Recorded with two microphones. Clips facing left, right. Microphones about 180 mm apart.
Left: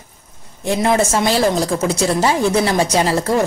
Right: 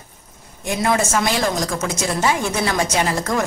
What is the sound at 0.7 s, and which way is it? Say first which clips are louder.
A woman's voice: left 4 dB; 30° left (ahead or behind).